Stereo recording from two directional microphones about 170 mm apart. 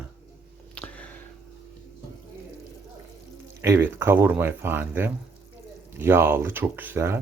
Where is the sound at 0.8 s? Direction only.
5° left (ahead or behind).